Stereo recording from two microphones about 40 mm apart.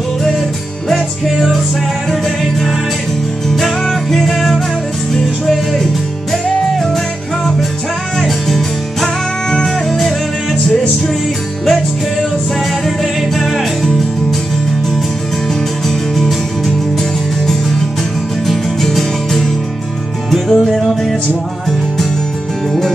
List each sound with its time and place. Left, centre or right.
0.8 s music: centre
8.2 s music: centre
9.0 s music: centre
20.2 s music: centre